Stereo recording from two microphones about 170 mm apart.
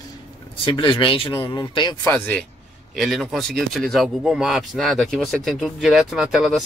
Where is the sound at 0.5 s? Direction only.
30° left (ahead or behind).